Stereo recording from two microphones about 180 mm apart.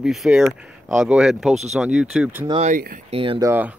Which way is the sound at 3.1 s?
30° right (ahead or behind).